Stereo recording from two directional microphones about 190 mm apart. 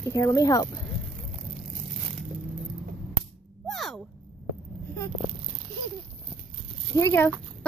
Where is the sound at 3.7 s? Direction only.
Centre (ahead or behind).